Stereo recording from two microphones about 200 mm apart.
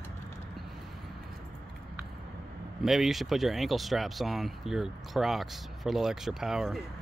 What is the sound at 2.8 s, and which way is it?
Speech, centre (ahead or behind).